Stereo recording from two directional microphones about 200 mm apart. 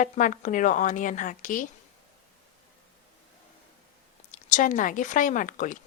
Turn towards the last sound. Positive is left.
turn(degrees=40)  # may be behind; listen again after turning